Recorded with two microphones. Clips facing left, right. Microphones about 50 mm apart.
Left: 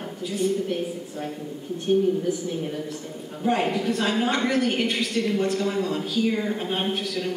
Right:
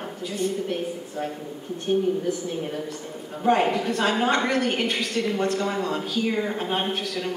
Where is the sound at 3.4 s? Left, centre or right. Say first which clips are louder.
Right 2 dB; centre.